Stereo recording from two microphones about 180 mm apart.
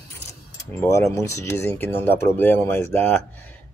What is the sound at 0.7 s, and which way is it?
Speech, 15° left (ahead or behind).